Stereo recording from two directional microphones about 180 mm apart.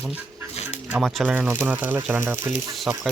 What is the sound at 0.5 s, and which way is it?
Dog, 35° left (ahead or behind).